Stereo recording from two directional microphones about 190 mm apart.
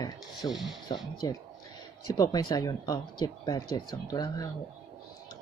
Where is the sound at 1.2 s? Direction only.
20° left (ahead or behind).